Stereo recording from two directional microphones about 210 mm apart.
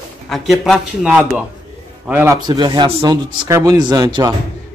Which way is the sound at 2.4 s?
20° right (ahead or behind).